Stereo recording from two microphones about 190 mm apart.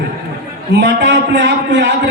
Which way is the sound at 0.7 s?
65° right (ahead or behind).